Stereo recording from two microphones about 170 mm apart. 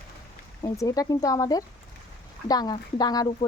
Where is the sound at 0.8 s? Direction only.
20° left (ahead or behind).